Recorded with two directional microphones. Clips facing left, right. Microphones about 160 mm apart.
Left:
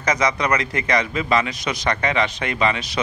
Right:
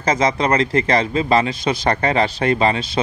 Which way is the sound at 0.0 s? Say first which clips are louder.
Right 3 dB; 30° right (ahead or behind).